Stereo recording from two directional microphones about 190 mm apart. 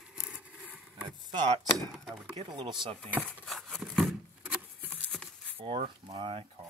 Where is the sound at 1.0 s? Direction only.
25° right (ahead or behind).